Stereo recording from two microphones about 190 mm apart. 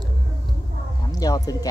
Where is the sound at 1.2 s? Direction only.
20° left (ahead or behind).